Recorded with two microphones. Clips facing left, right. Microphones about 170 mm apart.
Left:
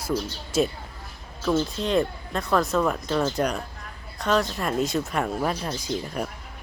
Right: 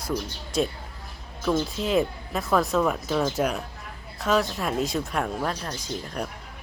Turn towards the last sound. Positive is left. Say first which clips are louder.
# left 3 dB
turn(degrees=5)  # may be behind; listen again after turning